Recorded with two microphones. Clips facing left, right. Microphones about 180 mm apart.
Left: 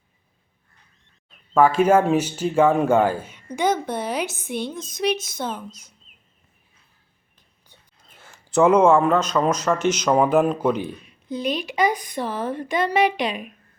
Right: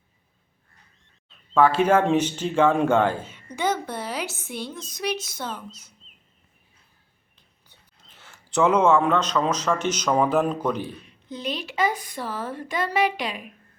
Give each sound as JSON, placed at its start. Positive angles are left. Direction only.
{"t": 1.3, "sound": "speech", "side_deg": 10}
{"t": 7.7, "sound": "speech", "side_deg": 10}